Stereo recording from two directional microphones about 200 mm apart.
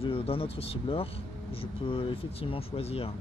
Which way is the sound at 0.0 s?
30° left (ahead or behind).